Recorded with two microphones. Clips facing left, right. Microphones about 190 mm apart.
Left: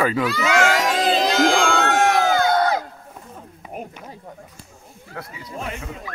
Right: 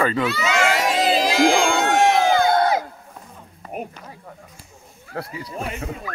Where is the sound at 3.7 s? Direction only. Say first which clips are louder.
Right 3 dB; 15° right (ahead or behind).